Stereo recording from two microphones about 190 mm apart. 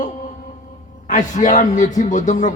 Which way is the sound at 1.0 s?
40° left (ahead or behind).